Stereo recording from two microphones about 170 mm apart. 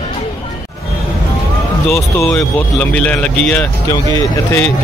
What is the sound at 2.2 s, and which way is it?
Speech, 10° left (ahead or behind).